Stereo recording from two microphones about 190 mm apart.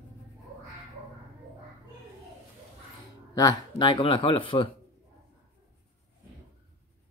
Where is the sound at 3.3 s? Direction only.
20° left (ahead or behind).